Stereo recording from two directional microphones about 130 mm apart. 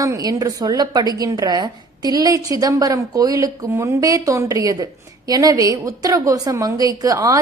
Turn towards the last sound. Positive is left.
turn(degrees=-25)  # may be behind; listen again after turning